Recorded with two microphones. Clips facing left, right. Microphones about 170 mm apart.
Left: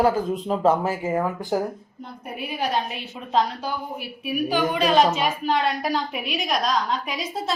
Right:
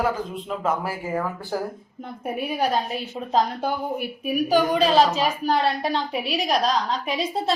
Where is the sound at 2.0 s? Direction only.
50° right (ahead or behind).